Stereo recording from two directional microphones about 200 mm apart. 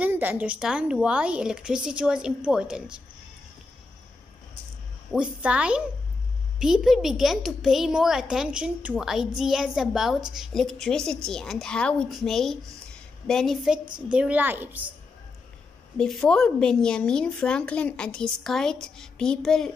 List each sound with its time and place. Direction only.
0.0 s a woman's voice: 10° right (ahead or behind)
5.1 s a woman's voice: 5° right (ahead or behind)
13.8 s a woman's voice: 25° right (ahead or behind)
14.1 s a woman's voice: 5° right (ahead or behind)
16.0 s a woman's voice: 5° left (ahead or behind)